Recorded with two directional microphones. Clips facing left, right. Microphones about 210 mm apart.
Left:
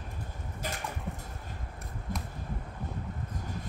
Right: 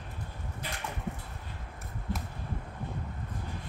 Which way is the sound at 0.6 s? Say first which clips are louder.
Left 4 dB; 40° left (ahead or behind).